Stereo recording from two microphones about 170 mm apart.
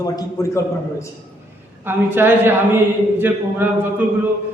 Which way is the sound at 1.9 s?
10° right (ahead or behind).